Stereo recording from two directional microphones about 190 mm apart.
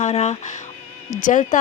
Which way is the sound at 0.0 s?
35° left (ahead or behind).